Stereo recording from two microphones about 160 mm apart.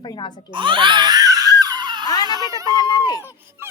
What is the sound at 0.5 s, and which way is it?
Baby cry, 30° right (ahead or behind).